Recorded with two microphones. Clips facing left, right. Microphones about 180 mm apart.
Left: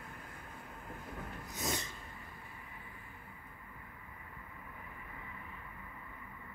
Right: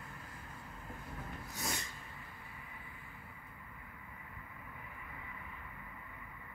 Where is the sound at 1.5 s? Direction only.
20° left (ahead or behind).